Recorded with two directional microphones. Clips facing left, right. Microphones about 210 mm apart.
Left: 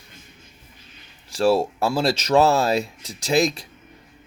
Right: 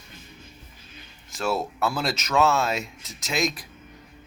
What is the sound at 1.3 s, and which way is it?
Speech, 30° left (ahead or behind).